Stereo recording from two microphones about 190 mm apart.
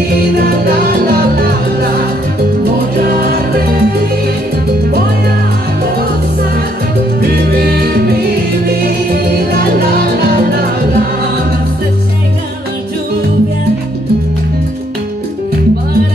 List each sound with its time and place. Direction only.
0.4 s music: 55° right (ahead or behind)
7.2 s music: 55° right (ahead or behind)